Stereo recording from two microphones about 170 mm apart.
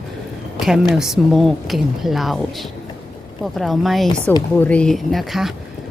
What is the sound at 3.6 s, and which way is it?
Speech, centre (ahead or behind).